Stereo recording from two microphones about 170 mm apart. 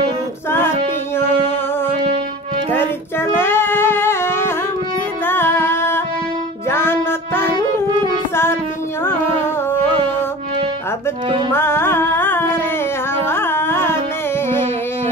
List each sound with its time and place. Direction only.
2.7 s music: 15° left (ahead or behind)
7.5 s music: 25° right (ahead or behind)
11.5 s carnatic music: 15° left (ahead or behind)